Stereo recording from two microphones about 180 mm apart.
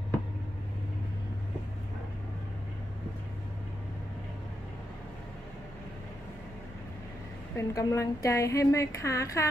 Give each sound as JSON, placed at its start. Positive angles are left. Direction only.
{"t": 7.5, "sound": "a woman's voice", "side_deg": 15}